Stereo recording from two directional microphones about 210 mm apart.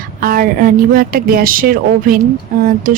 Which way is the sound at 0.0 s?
45° right (ahead or behind).